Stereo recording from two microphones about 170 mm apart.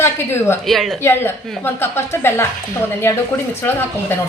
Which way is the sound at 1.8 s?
15° left (ahead or behind).